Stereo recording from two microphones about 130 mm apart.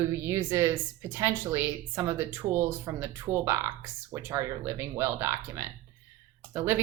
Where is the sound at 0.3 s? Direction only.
20° right (ahead or behind).